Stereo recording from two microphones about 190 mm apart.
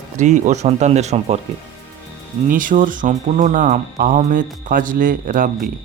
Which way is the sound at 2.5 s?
45° right (ahead or behind).